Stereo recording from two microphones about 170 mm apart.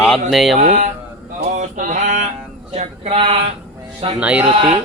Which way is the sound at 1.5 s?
45° right (ahead or behind).